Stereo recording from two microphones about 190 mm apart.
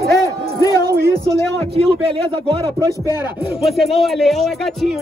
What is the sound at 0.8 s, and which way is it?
Speech, 60° right (ahead or behind).